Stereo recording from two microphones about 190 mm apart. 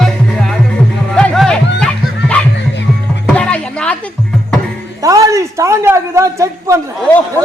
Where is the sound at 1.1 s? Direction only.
5° left (ahead or behind).